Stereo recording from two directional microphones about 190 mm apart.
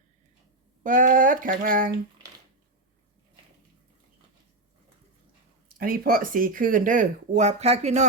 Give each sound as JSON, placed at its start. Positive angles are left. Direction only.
{"t": 0.8, "sound": "speech", "side_deg": -45}
{"t": 5.6, "sound": "speech", "side_deg": -50}